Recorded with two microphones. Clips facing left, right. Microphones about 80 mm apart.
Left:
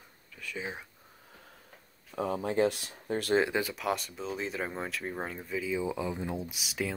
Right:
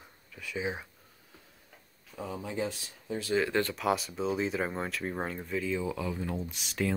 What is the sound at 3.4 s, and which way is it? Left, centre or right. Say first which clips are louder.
Speech: even; centre.